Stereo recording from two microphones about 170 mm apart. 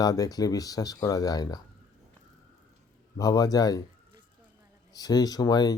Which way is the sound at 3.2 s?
20° left (ahead or behind).